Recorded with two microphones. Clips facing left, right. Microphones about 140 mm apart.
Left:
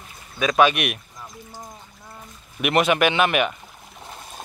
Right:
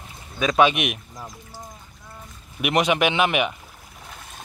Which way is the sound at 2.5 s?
10° right (ahead or behind).